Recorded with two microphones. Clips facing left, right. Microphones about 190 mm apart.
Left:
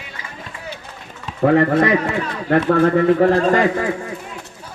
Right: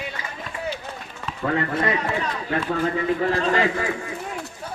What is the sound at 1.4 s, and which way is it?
A man's voice, 70° left (ahead or behind).